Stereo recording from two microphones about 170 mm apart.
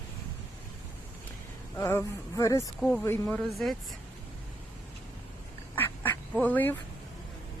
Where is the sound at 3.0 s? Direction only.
15° left (ahead or behind).